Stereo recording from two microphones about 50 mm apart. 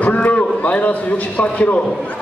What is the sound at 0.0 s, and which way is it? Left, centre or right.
A man's voice, left.